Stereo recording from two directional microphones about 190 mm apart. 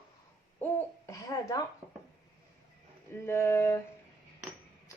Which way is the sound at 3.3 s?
15° left (ahead or behind).